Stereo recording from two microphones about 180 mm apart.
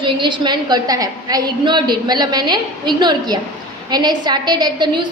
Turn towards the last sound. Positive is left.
turn(degrees=-25)  # may be behind; listen again after turning